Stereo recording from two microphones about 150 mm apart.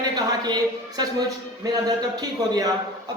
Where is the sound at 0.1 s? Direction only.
25° right (ahead or behind).